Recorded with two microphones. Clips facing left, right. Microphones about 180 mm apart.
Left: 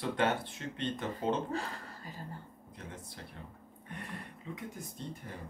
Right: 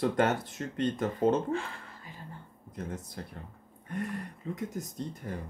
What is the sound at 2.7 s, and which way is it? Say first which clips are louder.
Speech: right 9 dB; 45° right (ahead or behind).